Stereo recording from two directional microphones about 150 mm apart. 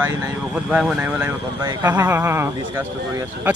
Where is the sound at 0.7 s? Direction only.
5° right (ahead or behind).